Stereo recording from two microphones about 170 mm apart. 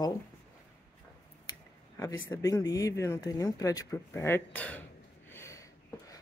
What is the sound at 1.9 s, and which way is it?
Speech, 20° left (ahead or behind).